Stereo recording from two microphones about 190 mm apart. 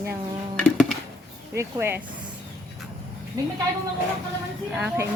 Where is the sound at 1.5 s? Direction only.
15° right (ahead or behind).